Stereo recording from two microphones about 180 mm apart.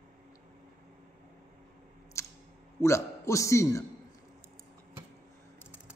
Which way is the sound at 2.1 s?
15° left (ahead or behind).